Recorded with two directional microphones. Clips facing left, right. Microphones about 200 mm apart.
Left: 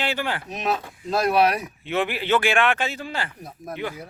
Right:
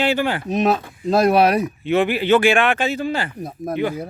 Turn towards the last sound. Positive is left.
turn(degrees=-35)  # may be behind; listen again after turning